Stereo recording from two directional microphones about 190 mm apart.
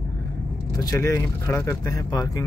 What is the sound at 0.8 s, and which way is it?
Speech, 15° left (ahead or behind).